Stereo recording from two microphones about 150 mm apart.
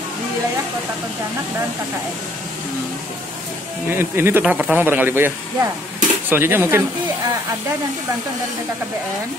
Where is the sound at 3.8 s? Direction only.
15° right (ahead or behind).